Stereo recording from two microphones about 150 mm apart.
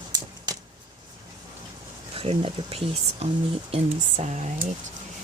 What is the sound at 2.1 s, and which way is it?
Speech, 40° right (ahead or behind).